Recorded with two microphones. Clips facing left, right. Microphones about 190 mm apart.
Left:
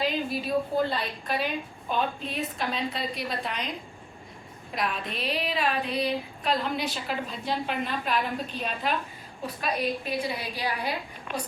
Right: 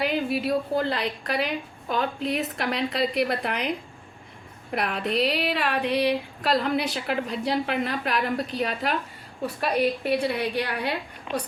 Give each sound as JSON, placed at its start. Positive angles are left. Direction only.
{"t": 0.0, "sound": "a woman's voice", "side_deg": -65}